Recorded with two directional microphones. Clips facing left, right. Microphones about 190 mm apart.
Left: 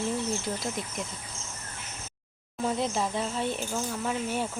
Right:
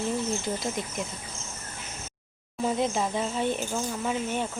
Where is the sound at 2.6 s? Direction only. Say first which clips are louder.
Right 2 dB; centre (ahead or behind).